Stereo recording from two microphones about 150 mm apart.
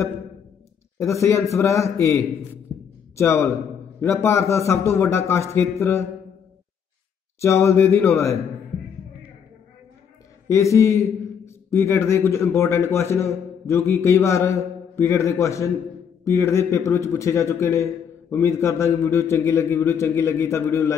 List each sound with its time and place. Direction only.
0.9 s a man's voice: 20° left (ahead or behind)
7.3 s a man's voice: 20° left (ahead or behind)
10.5 s a man's voice: 20° left (ahead or behind)